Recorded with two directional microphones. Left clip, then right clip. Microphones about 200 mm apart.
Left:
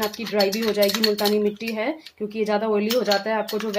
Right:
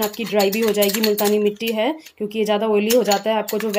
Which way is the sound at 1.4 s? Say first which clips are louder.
Right 5 dB; 40° right (ahead or behind).